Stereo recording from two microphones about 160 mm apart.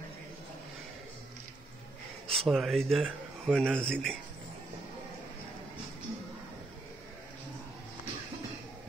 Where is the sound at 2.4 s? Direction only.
Centre (ahead or behind).